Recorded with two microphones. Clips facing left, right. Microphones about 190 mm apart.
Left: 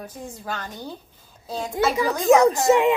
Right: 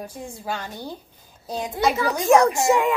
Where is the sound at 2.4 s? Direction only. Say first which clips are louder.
Left 2 dB; 20° left (ahead or behind).